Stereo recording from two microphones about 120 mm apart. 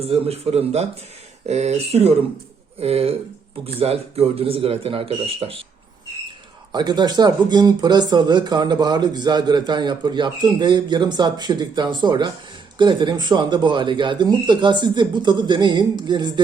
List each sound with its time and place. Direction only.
0.0 s speech: 60° right (ahead or behind)
6.7 s speech: 35° right (ahead or behind)